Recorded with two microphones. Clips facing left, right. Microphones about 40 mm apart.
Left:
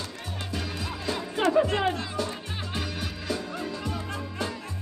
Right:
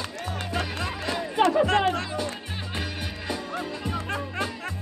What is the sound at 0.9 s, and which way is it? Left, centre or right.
Music, right.